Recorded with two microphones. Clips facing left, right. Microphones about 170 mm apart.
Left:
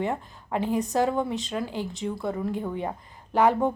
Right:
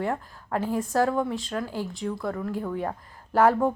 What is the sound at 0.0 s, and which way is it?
A woman's voice, 10° left (ahead or behind).